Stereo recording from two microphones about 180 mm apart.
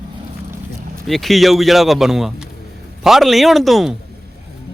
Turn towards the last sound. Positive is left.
turn(degrees=0)  # may be behind; listen again after turning